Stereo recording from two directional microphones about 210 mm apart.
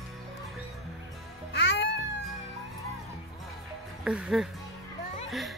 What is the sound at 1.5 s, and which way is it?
Music, 50° left (ahead or behind).